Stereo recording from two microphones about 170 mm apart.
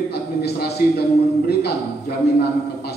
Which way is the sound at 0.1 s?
75° left (ahead or behind).